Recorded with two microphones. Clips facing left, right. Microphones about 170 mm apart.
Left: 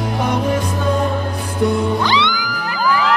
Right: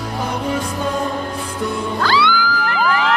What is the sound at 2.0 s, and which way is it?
Music, 20° left (ahead or behind).